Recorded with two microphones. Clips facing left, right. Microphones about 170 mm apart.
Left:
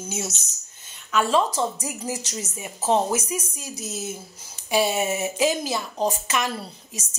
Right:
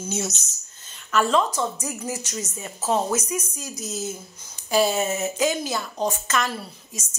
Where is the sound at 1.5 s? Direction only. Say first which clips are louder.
Left 1 dB; 30° left (ahead or behind).